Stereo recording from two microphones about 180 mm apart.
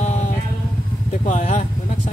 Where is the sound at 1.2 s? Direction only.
40° left (ahead or behind).